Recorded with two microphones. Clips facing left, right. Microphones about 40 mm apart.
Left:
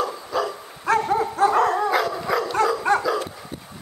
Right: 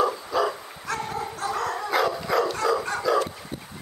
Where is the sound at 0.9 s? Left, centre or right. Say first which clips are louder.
Left 10 dB; left.